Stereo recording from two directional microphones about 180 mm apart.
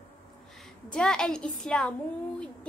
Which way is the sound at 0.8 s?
5° left (ahead or behind).